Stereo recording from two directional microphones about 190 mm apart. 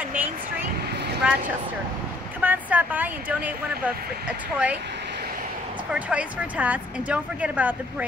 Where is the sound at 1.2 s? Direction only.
10° right (ahead or behind).